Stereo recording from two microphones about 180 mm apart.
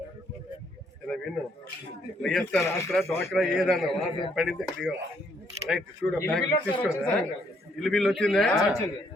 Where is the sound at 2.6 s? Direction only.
15° left (ahead or behind).